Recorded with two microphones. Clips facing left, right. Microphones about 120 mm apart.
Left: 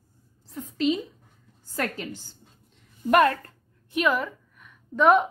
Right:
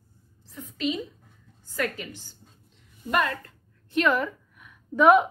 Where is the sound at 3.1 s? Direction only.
55° left (ahead or behind).